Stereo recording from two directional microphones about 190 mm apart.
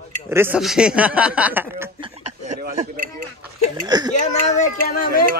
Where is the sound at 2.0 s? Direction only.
35° right (ahead or behind).